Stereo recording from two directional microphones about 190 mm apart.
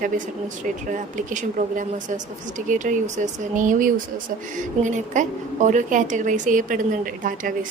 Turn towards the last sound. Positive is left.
turn(degrees=-45)  # may be behind; listen again after turning